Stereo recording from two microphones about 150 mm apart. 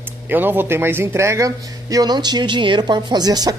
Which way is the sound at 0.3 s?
15° right (ahead or behind).